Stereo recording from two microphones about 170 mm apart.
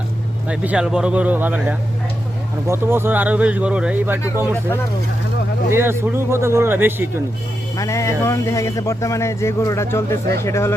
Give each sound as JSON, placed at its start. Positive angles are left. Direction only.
{"t": 0.4, "sound": "speech", "side_deg": -10}
{"t": 5.7, "sound": "speech", "side_deg": -15}
{"t": 7.8, "sound": "speech", "side_deg": 20}